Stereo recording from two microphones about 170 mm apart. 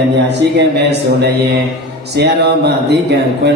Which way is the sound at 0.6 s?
80° right.